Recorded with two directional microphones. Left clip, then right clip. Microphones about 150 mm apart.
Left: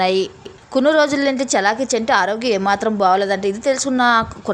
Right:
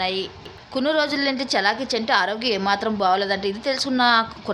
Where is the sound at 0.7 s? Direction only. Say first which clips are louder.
Left 7 dB; 45° left (ahead or behind).